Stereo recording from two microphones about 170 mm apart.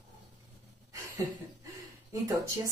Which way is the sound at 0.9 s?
20° right (ahead or behind).